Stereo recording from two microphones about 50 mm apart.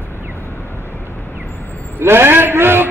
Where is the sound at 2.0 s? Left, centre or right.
Right.